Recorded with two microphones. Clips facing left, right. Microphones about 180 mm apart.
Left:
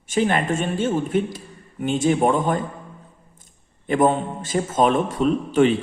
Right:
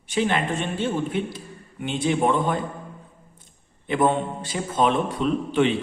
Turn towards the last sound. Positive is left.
turn(degrees=45)  # may be behind; listen again after turning